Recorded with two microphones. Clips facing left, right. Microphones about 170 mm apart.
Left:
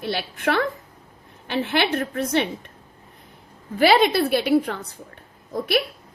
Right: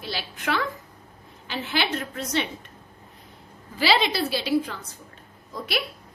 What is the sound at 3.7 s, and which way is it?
A woman's voice, 55° left (ahead or behind).